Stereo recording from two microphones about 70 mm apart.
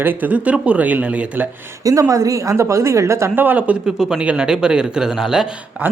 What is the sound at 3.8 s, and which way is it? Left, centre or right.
Speech, centre.